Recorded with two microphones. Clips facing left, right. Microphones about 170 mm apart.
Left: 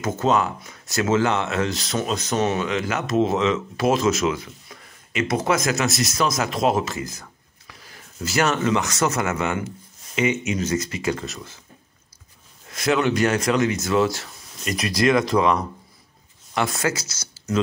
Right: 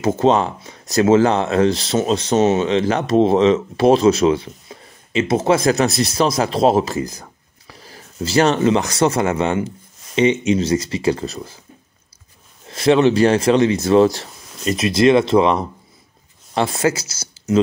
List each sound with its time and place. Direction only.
0.2 s speech: 30° right (ahead or behind)
12.6 s speech: 30° right (ahead or behind)